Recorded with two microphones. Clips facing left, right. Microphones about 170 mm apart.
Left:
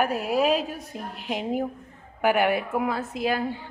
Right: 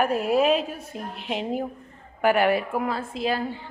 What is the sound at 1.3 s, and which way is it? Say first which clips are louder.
A woman's voice: left 1 dB; 5° left (ahead or behind).